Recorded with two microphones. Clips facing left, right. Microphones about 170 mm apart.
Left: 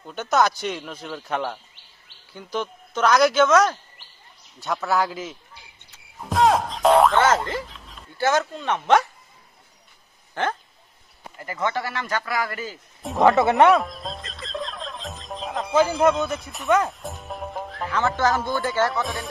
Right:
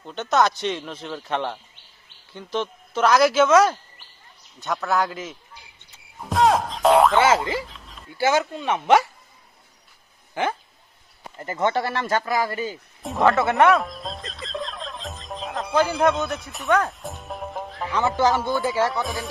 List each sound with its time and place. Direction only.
0.0 s a man's voice: centre (ahead or behind)
10.4 s speech: 10° right (ahead or behind)
11.3 s speech: 30° right (ahead or behind)
13.2 s speech: 20° left (ahead or behind)
13.7 s music: centre (ahead or behind)
17.9 s speech: 10° right (ahead or behind)
18.3 s a man's voice: centre (ahead or behind)